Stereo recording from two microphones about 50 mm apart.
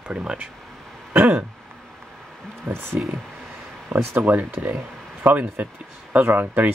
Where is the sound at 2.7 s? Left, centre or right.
Right.